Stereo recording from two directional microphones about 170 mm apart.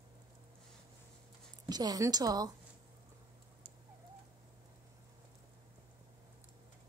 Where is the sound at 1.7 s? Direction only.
20° right (ahead or behind).